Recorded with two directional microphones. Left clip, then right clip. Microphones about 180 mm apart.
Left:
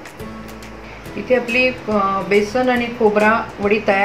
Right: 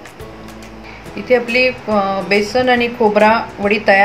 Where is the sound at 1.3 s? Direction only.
30° right (ahead or behind).